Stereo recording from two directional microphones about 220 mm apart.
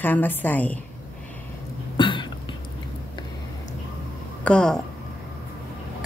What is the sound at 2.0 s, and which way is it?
Cough, 20° left (ahead or behind).